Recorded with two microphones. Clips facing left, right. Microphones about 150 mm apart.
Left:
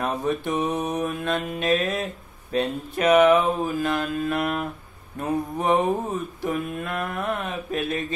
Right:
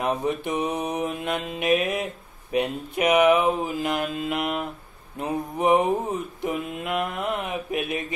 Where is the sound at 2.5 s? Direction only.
15° right (ahead or behind).